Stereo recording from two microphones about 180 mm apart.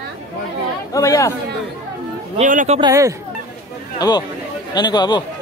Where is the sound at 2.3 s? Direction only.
45° right (ahead or behind).